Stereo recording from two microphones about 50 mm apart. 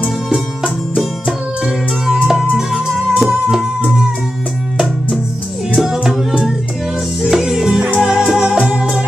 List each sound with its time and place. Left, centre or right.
0.9 s music: centre
5.8 s music: centre